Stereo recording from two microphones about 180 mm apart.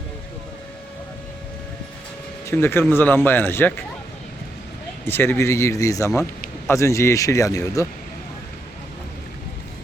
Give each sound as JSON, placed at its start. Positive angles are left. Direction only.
{"t": 2.5, "sound": "speech", "side_deg": 15}
{"t": 5.0, "sound": "speech", "side_deg": 10}